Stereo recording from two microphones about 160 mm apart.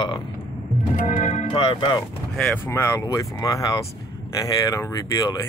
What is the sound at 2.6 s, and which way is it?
Speech, 15° left (ahead or behind).